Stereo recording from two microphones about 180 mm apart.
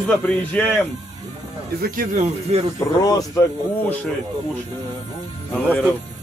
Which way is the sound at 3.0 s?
20° left (ahead or behind).